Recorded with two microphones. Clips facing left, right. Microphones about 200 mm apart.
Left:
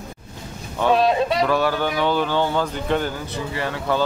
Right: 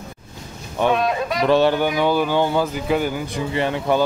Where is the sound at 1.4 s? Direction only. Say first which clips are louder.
Right 4 dB; 25° right (ahead or behind).